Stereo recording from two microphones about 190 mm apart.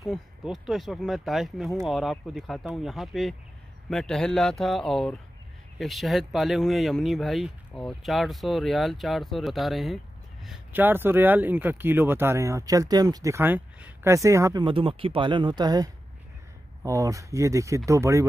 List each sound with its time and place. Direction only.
0.0 s speech: centre (ahead or behind)